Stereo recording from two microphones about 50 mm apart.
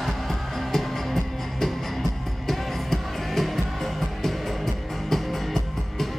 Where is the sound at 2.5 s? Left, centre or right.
Centre.